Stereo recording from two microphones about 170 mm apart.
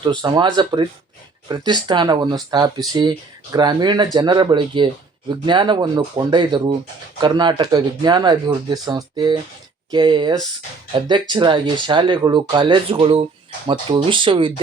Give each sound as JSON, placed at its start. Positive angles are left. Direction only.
{"t": 0.0, "sound": "speech", "side_deg": -25}